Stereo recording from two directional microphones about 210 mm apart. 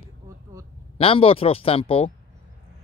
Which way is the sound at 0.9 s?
25° left (ahead or behind).